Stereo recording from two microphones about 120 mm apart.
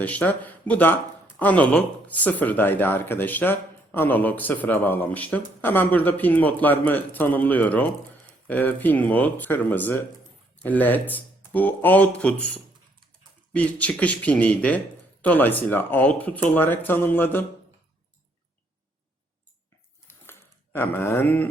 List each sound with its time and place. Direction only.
0.0 s speech: 15° left (ahead or behind)
20.7 s speech: 20° left (ahead or behind)